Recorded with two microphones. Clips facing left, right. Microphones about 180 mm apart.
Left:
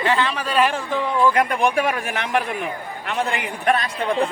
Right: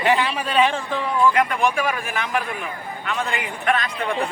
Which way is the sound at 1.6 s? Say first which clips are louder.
Left 2 dB; 65° left (ahead or behind).